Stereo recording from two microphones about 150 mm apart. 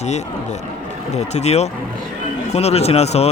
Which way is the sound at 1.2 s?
45° left (ahead or behind).